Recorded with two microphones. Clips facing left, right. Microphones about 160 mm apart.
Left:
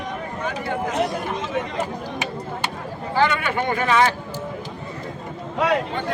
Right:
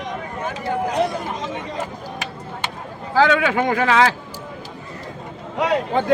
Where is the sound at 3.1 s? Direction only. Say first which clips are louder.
Right 4 dB; 90° right.